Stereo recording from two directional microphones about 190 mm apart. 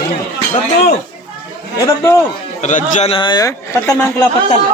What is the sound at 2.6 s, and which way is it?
A man's voice, 35° left (ahead or behind).